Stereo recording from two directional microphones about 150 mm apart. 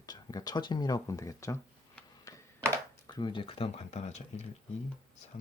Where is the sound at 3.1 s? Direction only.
30° left (ahead or behind); by 4.4 s 50° left (ahead or behind).